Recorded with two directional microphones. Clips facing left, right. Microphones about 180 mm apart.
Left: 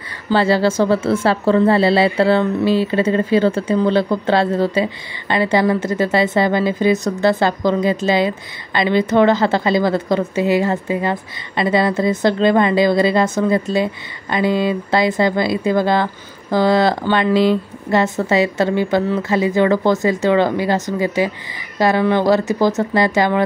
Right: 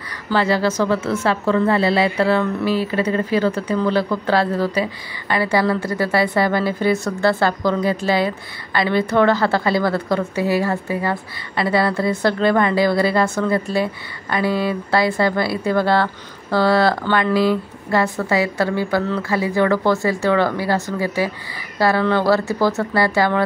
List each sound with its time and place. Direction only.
0.3 s speech: 30° left (ahead or behind)